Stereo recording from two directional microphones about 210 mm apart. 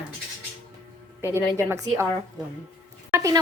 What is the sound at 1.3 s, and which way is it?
Speech, 10° right (ahead or behind).